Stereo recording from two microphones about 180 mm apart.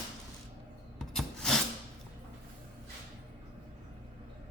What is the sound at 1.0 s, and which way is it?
Rub, centre (ahead or behind).